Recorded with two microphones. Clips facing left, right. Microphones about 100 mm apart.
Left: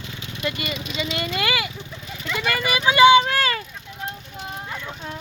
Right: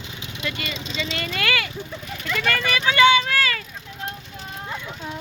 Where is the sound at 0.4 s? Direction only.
20° left (ahead or behind).